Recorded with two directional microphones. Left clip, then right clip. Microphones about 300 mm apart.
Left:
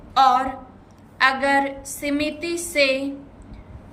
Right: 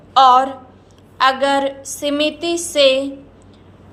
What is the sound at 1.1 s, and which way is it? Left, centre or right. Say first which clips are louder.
A woman's voice: right 3 dB; centre.